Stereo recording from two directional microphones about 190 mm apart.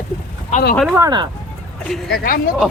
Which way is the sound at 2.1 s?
50° left (ahead or behind).